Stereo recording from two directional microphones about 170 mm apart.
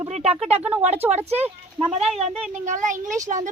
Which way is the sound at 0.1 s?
40° right (ahead or behind).